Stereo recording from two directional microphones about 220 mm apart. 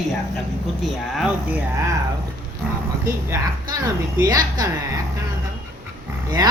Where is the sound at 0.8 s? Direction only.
Centre (ahead or behind).